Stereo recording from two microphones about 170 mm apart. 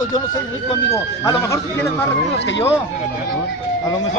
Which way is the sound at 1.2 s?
15° left (ahead or behind).